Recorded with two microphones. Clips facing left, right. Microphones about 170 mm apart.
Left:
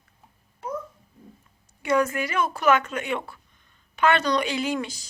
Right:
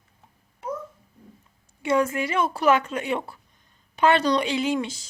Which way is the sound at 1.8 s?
25° right (ahead or behind).